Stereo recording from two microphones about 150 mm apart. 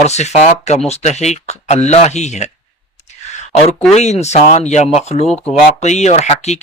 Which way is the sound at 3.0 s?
50° left (ahead or behind).